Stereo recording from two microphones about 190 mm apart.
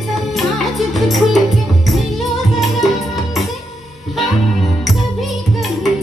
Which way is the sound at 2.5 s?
Centre (ahead or behind).